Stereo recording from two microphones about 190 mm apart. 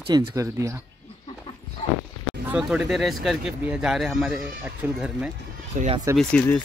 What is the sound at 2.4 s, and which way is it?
Speech, 5° right (ahead or behind).